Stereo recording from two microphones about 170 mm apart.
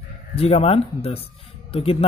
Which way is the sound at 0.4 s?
35° left (ahead or behind).